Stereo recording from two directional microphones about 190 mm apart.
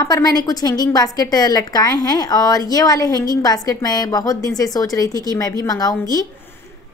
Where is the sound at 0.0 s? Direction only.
20° left (ahead or behind).